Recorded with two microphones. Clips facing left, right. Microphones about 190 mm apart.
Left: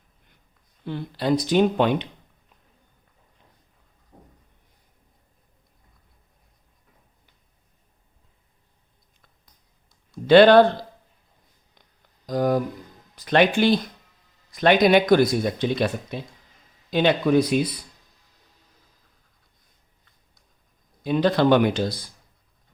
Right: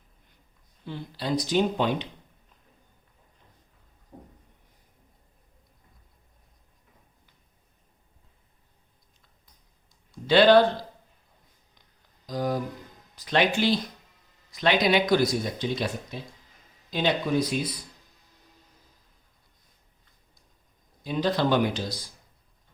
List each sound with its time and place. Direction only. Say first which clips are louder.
0.9 s speech: left 7 dB; 60° left (ahead or behind)
10.2 s speech: left 5 dB; 55° left (ahead or behind)
12.2 s a sound: left 6 dB; 55° left (ahead or behind)
13.1 s speech: left 5 dB; 55° left (ahead or behind)
21.0 s speech: left 6 dB; 60° left (ahead or behind)